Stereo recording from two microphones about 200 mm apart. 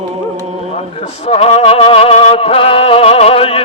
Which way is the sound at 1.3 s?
30° left (ahead or behind).